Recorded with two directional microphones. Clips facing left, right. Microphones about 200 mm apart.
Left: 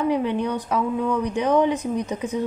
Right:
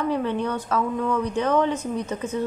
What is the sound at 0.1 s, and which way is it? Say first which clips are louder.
Speech: left 2 dB; 15° left (ahead or behind).